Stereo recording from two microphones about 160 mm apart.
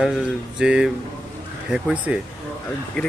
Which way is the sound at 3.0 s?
5° left (ahead or behind).